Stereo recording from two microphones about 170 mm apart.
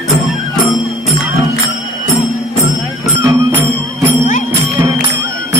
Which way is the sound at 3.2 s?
10° right (ahead or behind).